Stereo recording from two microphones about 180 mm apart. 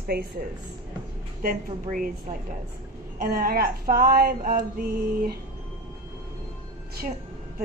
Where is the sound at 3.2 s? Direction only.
55° right (ahead or behind).